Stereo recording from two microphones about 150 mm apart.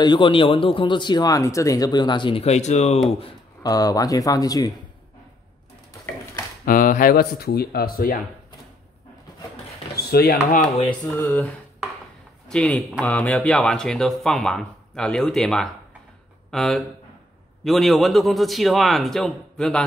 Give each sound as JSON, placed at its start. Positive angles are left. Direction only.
{"t": 0.0, "sound": "speech", "side_deg": 30}
{"t": 3.6, "sound": "speech", "side_deg": 25}
{"t": 6.6, "sound": "speech", "side_deg": 65}
{"t": 9.9, "sound": "speech", "side_deg": 90}
{"t": 11.1, "sound": "a sound", "side_deg": 10}
{"t": 12.4, "sound": "speech", "side_deg": 5}